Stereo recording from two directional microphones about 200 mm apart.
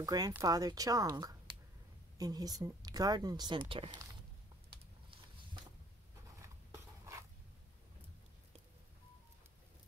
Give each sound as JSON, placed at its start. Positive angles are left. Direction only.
{"t": 0.0, "sound": "speech", "side_deg": -15}
{"t": 6.4, "sound": "writing", "side_deg": -15}